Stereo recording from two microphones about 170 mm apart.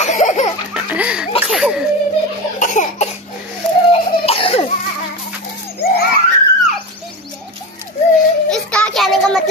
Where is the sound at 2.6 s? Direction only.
45° left (ahead or behind).